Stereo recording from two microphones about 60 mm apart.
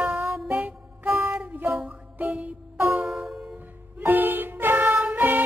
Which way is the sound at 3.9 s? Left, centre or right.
Right.